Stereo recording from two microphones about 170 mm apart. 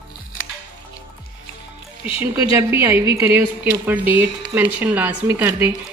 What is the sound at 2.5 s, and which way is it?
Speech, 15° right (ahead or behind).